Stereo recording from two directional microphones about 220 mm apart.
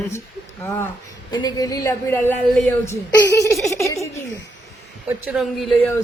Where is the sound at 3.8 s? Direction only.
15° left (ahead or behind).